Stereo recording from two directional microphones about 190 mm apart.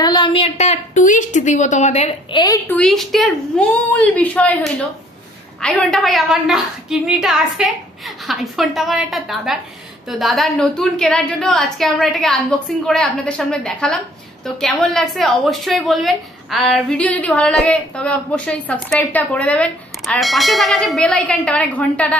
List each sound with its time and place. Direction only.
0.0 s a woman's voice: 25° left (ahead or behind)
2.7 s a woman's voice: centre (ahead or behind)